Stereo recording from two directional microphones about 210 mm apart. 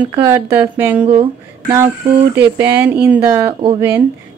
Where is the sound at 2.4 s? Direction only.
10° right (ahead or behind).